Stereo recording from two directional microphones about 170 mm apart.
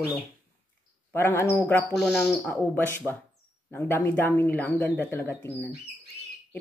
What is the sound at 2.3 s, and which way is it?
Speech, 10° left (ahead or behind).